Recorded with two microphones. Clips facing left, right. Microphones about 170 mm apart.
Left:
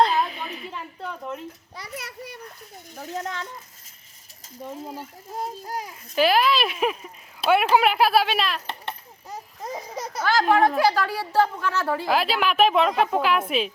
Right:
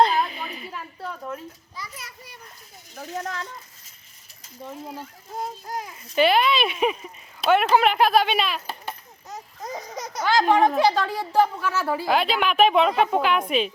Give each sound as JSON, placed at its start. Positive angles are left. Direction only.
{"t": 0.0, "sound": "a sound", "side_deg": 0}
{"t": 1.7, "sound": "a child's voice", "side_deg": 65}
{"t": 3.2, "sound": "a child's voice", "side_deg": 0}
{"t": 4.6, "sound": "a child's voice", "side_deg": 10}
{"t": 9.3, "sound": "a sound", "side_deg": 5}
{"t": 10.3, "sound": "a child's voice", "side_deg": -15}